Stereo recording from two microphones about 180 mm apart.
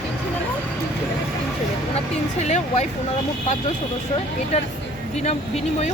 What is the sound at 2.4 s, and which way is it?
Speech, 40° left (ahead or behind).